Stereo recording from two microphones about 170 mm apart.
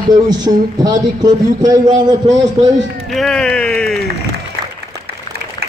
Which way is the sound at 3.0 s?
Centre (ahead or behind).